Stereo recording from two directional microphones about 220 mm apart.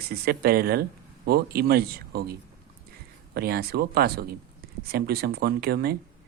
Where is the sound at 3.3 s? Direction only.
45° right (ahead or behind).